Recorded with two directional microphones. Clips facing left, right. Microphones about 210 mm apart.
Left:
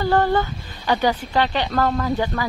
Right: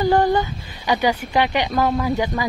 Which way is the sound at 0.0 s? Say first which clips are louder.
Right 2 dB; 15° right (ahead or behind).